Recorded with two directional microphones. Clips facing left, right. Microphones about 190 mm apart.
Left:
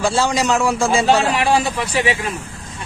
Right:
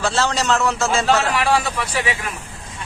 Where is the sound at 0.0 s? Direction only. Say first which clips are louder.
Left 3 dB; 10° left (ahead or behind).